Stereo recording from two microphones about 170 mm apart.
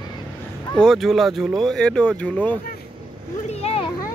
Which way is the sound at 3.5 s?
35° left (ahead or behind).